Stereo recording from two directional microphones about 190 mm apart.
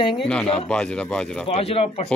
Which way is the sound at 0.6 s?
5° left (ahead or behind).